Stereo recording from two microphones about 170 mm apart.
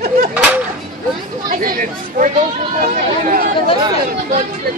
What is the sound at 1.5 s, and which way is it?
Chatter, 55° right (ahead or behind).